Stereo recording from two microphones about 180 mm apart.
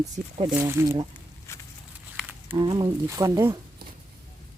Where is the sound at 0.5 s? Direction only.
15° right (ahead or behind).